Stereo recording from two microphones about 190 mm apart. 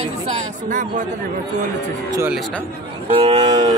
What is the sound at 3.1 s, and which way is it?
Speech, 30° right (ahead or behind).